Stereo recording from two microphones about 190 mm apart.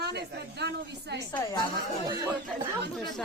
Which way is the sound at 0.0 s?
60° right (ahead or behind).